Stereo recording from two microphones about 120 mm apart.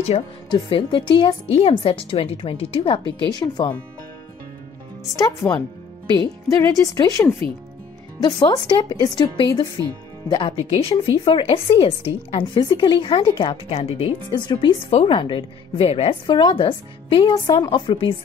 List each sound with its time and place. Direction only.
0.1 s speech: 55° left (ahead or behind)
0.5 s a woman's voice: 40° left (ahead or behind)
5.1 s a woman's voice: 30° left (ahead or behind)
10.7 s speech: 55° left (ahead or behind)
12.5 s speech: 40° left (ahead or behind)
14.9 s speech: 50° left (ahead or behind)